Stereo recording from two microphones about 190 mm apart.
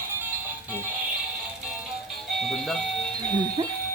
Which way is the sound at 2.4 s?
Centre (ahead or behind).